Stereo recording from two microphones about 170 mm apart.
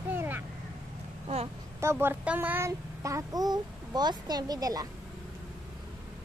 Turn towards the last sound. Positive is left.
turn(degrees=-20)  # may be behind; listen again after turning